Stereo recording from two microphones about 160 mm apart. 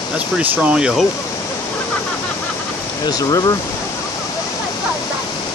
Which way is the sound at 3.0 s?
25° left (ahead or behind).